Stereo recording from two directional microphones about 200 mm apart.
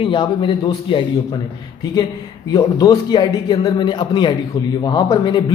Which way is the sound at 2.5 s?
20° left (ahead or behind).